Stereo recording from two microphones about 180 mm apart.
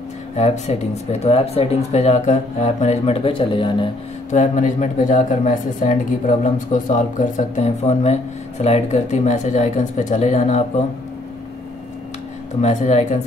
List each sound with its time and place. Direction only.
0.4 s speech: 40° left (ahead or behind)
4.3 s speech: 45° left (ahead or behind)
12.6 s speech: 40° left (ahead or behind)